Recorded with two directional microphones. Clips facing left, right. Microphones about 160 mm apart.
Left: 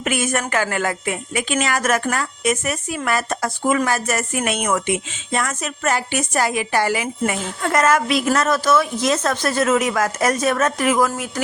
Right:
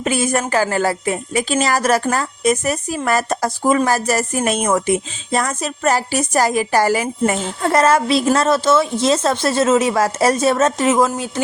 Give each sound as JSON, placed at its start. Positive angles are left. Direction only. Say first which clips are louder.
{"t": 0.0, "sound": "a woman's voice", "louder": "right 3 dB", "side_deg": -30}